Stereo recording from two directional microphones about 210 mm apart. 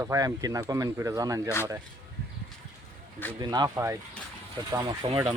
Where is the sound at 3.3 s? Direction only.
20° right (ahead or behind).